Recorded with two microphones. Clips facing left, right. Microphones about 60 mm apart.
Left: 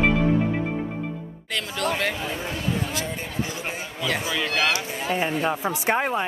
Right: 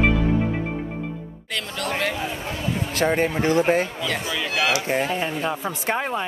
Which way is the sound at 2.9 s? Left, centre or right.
Right.